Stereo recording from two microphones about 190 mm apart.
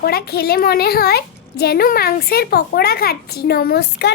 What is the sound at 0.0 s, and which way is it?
A woman's voice, 55° left (ahead or behind).